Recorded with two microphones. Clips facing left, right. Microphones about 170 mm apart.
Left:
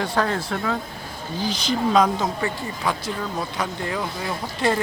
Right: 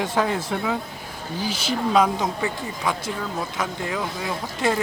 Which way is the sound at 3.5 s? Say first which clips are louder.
Even; 5° right (ahead or behind).